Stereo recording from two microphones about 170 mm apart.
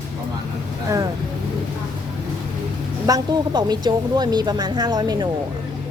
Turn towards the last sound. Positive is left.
turn(degrees=-25)  # may be behind; listen again after turning